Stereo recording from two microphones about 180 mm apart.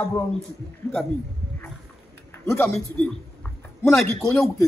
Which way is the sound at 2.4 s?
15° left (ahead or behind).